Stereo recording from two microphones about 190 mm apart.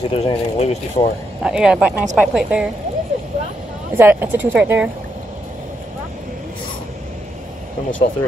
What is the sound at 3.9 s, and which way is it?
Speech, 10° right (ahead or behind).